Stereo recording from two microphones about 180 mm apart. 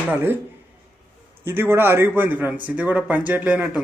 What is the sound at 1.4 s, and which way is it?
Speech, 15° right (ahead or behind).